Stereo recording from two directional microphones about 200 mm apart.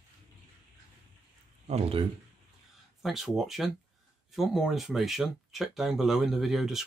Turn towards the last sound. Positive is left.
turn(degrees=0)  # may be behind; listen again after turning